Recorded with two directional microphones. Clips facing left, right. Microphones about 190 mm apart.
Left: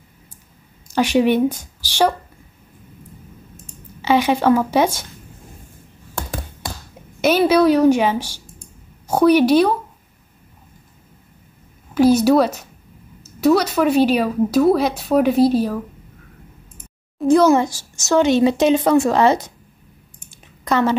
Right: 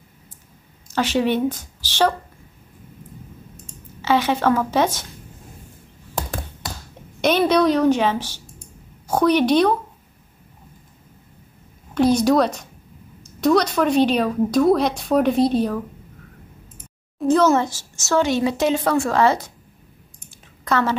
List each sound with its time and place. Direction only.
0.8 s speech: 15° left (ahead or behind)
4.0 s a woman's voice: 15° left (ahead or behind)
7.2 s a woman's voice: 5° left (ahead or behind)
11.9 s a woman's voice: 5° left (ahead or behind)
17.3 s a woman's voice: 10° left (ahead or behind)
20.2 s a sound: 15° left (ahead or behind)